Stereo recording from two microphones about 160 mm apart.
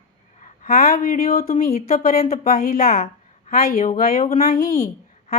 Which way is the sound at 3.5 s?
70° left (ahead or behind).